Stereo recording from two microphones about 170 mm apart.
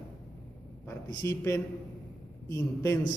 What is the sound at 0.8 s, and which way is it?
A man's voice, 15° left (ahead or behind).